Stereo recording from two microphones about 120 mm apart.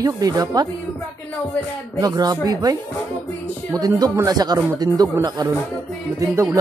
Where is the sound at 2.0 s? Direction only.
30° right (ahead or behind).